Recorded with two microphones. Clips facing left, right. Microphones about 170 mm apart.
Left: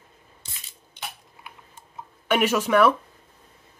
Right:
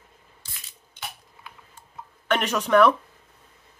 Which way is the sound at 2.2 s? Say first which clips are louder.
Left 3 dB; 5° left (ahead or behind).